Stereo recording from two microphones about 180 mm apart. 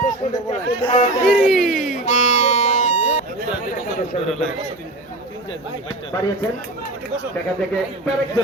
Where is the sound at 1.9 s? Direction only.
40° left (ahead or behind).